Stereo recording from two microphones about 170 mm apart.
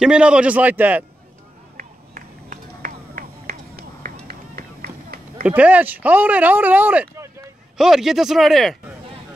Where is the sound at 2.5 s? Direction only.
50° right (ahead or behind).